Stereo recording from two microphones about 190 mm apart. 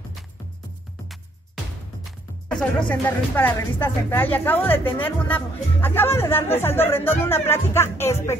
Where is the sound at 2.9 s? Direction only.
10° left (ahead or behind).